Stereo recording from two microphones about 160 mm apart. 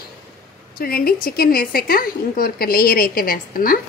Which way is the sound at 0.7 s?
70° left (ahead or behind).